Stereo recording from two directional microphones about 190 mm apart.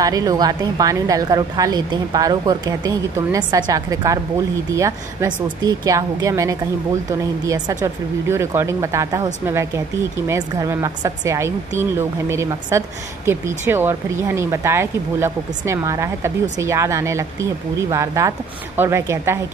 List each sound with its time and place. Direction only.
0.0 s a woman's voice: 20° right (ahead or behind)